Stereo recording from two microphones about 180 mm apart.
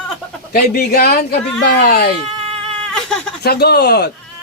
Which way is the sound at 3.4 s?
65° left (ahead or behind).